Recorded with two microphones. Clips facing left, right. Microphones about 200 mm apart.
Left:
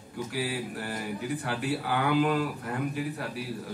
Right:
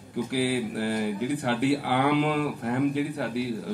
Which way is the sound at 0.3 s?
65° right (ahead or behind).